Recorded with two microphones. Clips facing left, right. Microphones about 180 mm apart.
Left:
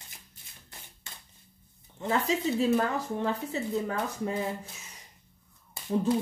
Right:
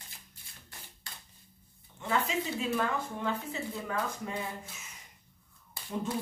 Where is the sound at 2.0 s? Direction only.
35° left (ahead or behind).